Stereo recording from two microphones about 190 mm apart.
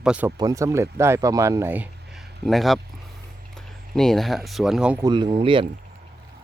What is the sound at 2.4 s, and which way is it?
Speech, centre (ahead or behind).